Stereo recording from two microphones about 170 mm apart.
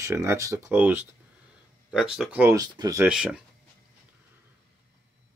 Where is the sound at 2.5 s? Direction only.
25° right (ahead or behind).